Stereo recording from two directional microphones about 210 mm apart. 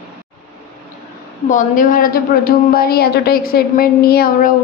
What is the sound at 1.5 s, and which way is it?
A woman's voice, 40° left (ahead or behind).